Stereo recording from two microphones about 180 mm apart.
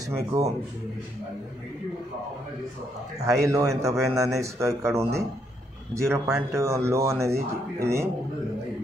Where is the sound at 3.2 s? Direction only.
15° right (ahead or behind).